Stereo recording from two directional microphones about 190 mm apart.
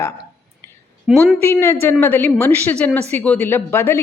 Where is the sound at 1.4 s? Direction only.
10° left (ahead or behind).